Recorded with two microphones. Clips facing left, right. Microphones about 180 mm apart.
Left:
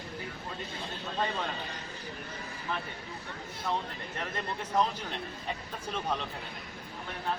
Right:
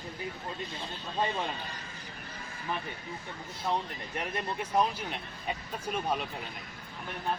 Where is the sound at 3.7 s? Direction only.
15° right (ahead or behind).